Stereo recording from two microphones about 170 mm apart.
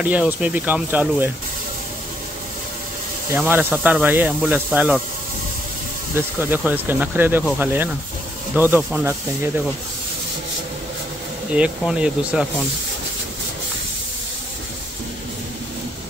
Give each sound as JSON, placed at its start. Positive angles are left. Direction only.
{"t": 0.0, "sound": "speech", "side_deg": -10}
{"t": 3.3, "sound": "speech", "side_deg": -10}
{"t": 6.1, "sound": "speech", "side_deg": -10}
{"t": 11.5, "sound": "speech", "side_deg": -5}